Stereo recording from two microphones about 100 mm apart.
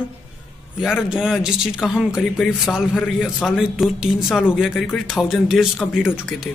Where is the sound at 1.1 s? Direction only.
5° right (ahead or behind).